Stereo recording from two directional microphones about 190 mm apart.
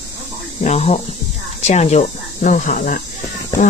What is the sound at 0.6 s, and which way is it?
Speech, 35° left (ahead or behind).